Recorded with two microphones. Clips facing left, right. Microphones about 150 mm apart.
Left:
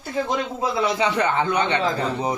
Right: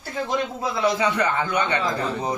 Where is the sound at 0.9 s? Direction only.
25° left (ahead or behind).